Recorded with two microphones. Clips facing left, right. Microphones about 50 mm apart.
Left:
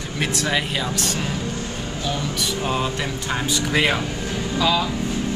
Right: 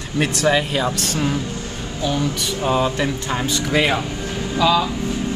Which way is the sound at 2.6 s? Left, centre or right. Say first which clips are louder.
Right 7 dB; centre.